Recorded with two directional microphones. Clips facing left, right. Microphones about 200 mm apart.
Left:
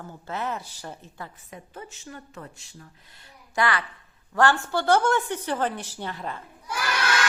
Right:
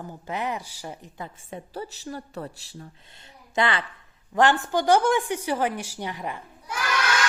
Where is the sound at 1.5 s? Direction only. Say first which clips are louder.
Right 6 dB; 30° right (ahead or behind).